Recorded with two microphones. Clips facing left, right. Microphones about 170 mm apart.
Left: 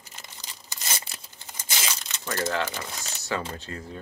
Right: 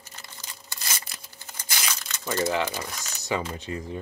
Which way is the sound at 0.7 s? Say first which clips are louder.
Left 2 dB; 20° left (ahead or behind).